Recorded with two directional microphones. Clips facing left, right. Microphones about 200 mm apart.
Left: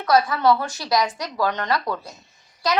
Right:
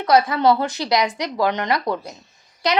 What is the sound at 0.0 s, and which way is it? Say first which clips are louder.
A woman's voice: right 2 dB; 20° right (ahead or behind).